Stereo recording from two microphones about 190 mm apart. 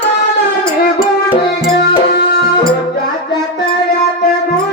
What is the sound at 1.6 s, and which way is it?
Music, 55° left (ahead or behind).